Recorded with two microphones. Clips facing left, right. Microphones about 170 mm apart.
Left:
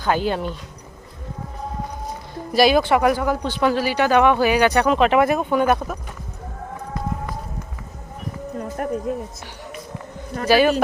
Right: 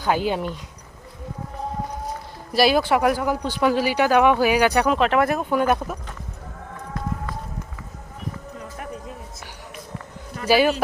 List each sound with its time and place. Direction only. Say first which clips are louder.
0.0 s speech: left 1 dB; 10° right (ahead or behind)
2.5 s speech: left 2 dB; 5° right (ahead or behind)
8.5 s music: left 9 dB; 50° left (ahead or behind)
10.4 s speech: left 2 dB; 10° right (ahead or behind)